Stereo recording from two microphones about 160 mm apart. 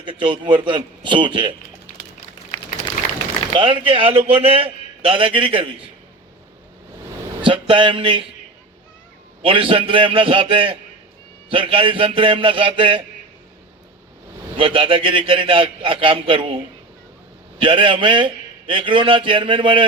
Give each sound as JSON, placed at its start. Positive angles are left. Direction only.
{"t": 0.0, "sound": "a man's voice", "side_deg": -30}
{"t": 3.5, "sound": "a man's voice", "side_deg": -30}
{"t": 7.4, "sound": "a man's voice", "side_deg": -30}
{"t": 9.4, "sound": "a man's voice", "side_deg": -35}
{"t": 14.5, "sound": "a man's voice", "side_deg": -35}
{"t": 17.6, "sound": "a man's voice", "side_deg": -30}